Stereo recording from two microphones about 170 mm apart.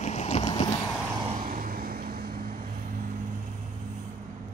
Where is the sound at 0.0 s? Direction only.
40° left (ahead or behind).